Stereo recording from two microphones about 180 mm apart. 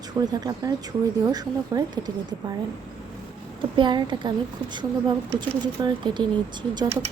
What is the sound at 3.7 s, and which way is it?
Speech, 25° right (ahead or behind).